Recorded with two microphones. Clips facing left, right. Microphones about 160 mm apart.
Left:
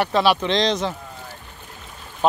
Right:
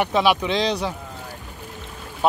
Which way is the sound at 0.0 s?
15° right (ahead or behind).